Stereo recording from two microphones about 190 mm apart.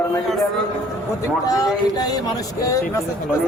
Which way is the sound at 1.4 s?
20° left (ahead or behind).